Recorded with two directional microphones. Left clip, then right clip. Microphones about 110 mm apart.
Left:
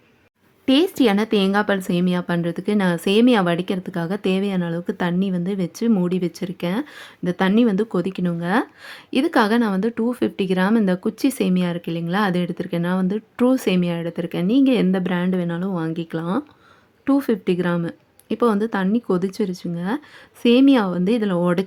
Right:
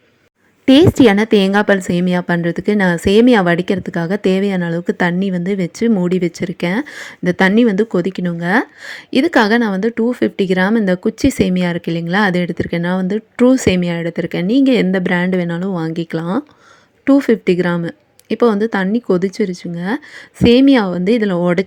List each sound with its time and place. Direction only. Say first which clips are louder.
0.6 s a woman's voice: right 8 dB; 40° right (ahead or behind); by 21.6 s 25° right (ahead or behind)